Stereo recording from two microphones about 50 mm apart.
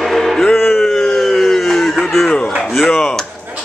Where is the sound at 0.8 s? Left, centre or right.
Centre.